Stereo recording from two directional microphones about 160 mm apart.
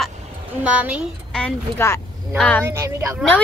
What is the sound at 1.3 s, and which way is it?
Music, 5° left (ahead or behind).